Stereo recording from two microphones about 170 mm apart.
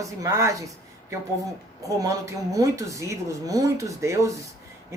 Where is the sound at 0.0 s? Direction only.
20° right (ahead or behind).